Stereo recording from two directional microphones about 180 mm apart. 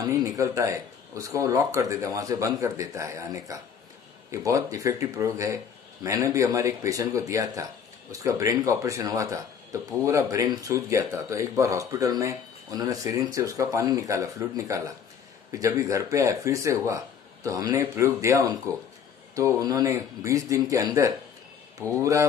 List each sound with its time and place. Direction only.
0.0 s speech: 20° right (ahead or behind)